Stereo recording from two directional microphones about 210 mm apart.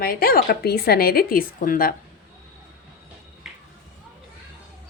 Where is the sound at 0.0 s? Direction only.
45° left (ahead or behind).